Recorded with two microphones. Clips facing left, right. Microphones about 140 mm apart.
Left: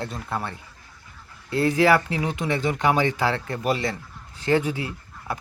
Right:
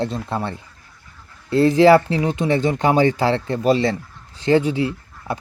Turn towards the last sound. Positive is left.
turn(degrees=-25)  # may be behind; listen again after turning